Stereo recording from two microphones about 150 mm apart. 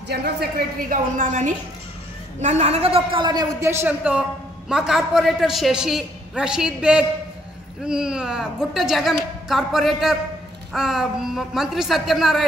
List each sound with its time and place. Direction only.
0.1 s a woman's voice: 90° right; by 12.4 s centre (ahead or behind)